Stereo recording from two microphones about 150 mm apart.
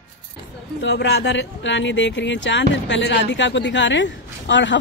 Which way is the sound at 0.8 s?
90° left.